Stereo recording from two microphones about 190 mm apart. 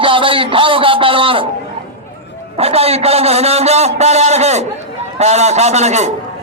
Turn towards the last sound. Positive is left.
turn(degrees=-35)  # may be behind; listen again after turning